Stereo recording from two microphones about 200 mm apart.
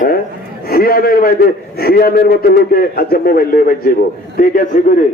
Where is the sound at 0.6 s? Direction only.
50° left (ahead or behind).